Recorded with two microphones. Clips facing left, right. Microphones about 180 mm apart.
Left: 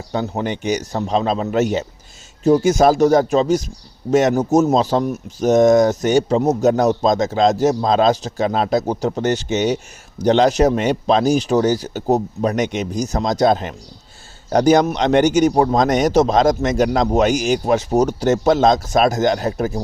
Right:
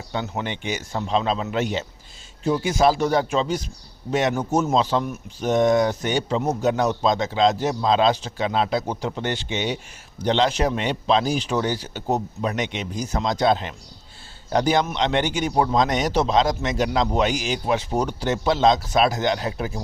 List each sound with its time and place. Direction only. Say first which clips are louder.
0.1 s speech: left 6 dB; 40° left (ahead or behind)